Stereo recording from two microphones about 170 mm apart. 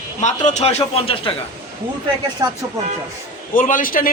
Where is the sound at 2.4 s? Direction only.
20° right (ahead or behind).